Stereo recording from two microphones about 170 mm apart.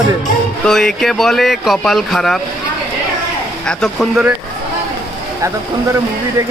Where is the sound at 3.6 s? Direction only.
5° left (ahead or behind).